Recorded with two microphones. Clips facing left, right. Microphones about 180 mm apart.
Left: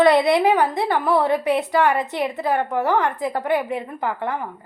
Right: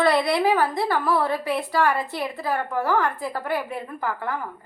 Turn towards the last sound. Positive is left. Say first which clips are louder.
# left 3 dB
turn(degrees=20)  # may be behind; listen again after turning